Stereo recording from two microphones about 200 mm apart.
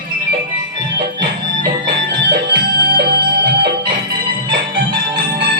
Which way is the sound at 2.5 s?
50° right (ahead or behind).